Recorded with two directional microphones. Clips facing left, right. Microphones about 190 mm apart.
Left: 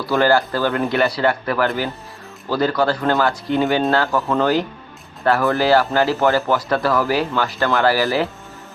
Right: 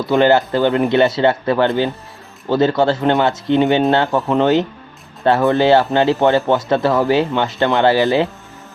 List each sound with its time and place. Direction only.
0.0 s speech: 20° right (ahead or behind)